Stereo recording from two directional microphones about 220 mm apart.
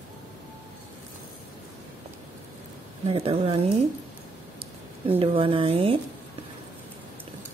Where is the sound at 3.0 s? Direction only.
25° right (ahead or behind).